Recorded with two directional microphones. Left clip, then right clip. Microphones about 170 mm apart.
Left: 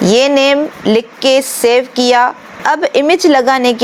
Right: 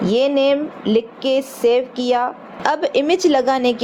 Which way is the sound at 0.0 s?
35° left (ahead or behind).